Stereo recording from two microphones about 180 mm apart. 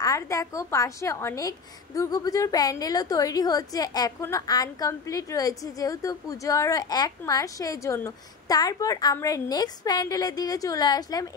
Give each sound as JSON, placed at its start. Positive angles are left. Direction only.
{"t": 0.0, "sound": "a woman's voice", "side_deg": 20}